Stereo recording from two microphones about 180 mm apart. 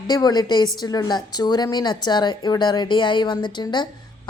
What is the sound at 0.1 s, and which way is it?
A woman's voice, 20° left (ahead or behind).